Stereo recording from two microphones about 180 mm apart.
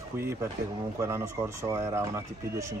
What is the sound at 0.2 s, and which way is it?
Speech, 15° right (ahead or behind).